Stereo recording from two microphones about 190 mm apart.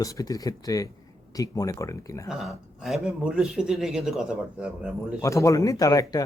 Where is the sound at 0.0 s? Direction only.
20° left (ahead or behind).